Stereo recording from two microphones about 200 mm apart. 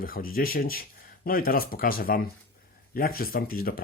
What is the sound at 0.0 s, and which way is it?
Speech, 45° left (ahead or behind).